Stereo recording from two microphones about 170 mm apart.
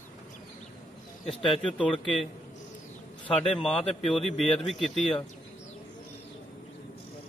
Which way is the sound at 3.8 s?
30° left (ahead or behind).